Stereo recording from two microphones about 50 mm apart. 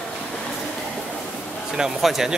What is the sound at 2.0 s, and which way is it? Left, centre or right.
Speech, centre.